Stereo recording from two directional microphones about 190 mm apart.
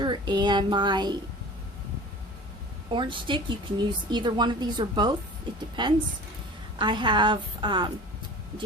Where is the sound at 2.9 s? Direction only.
25° right (ahead or behind).